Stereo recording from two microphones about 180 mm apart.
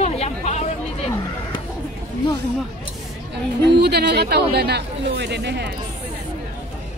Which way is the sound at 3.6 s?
65° right (ahead or behind).